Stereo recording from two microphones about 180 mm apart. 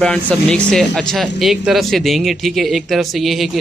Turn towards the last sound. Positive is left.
turn(degrees=0)  # may be behind; listen again after turning